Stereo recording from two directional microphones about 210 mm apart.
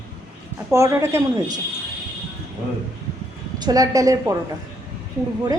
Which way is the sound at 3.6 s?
20° right (ahead or behind).